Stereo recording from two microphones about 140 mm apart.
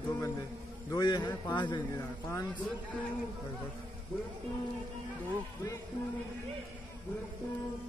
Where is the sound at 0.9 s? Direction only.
30° left (ahead or behind).